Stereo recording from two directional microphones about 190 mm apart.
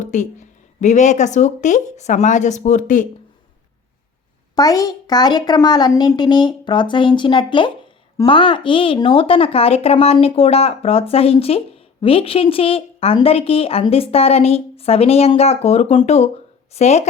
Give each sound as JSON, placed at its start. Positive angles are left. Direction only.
{"t": 0.0, "sound": "speech", "side_deg": 40}
{"t": 4.5, "sound": "a child's voice", "side_deg": 20}